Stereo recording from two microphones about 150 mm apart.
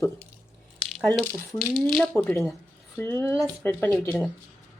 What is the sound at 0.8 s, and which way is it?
Speech, centre (ahead or behind).